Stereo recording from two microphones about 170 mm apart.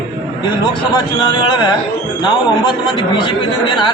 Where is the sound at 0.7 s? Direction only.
25° left (ahead or behind).